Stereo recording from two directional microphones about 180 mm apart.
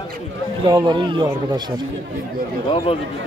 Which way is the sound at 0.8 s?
25° right (ahead or behind).